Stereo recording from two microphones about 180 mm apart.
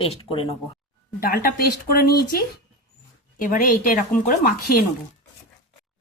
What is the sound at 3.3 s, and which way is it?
Speech, 50° left (ahead or behind).